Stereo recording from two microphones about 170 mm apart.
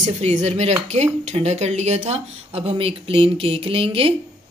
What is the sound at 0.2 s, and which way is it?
Speech, 40° right (ahead or behind).